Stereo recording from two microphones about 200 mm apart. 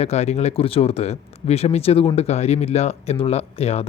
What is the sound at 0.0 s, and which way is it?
Speech, 30° left (ahead or behind).